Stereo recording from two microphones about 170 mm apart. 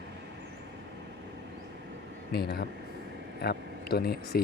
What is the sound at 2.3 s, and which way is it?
Speech, 70° left (ahead or behind).